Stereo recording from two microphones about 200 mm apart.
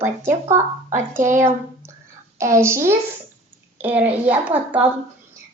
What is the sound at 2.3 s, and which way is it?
Speech, 15° right (ahead or behind).